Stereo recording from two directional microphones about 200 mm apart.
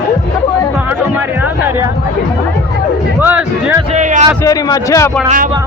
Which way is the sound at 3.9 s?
40° right (ahead or behind).